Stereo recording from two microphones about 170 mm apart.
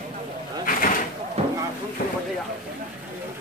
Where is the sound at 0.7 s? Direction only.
55° left (ahead or behind).